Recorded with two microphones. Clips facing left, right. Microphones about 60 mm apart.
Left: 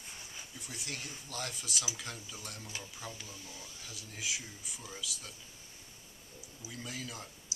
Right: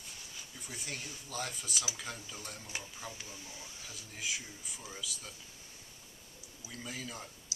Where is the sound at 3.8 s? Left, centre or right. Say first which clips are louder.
Even; centre.